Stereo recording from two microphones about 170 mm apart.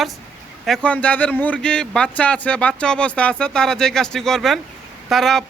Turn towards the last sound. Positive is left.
turn(degrees=0)  # may be behind; listen again after turning